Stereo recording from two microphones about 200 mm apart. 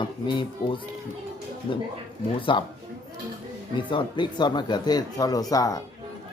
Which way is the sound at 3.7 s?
25° left (ahead or behind).